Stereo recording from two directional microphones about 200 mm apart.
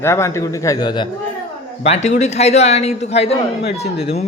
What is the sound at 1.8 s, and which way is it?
A man's voice, 35° left (ahead or behind).